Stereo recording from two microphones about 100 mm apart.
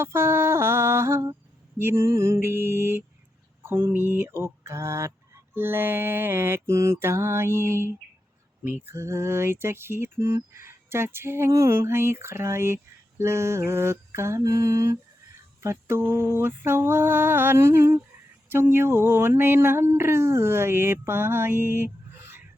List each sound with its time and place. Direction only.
0.0 s speech: 25° right (ahead or behind)